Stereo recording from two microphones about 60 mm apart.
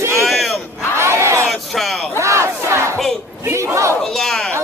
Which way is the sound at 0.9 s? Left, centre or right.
Right.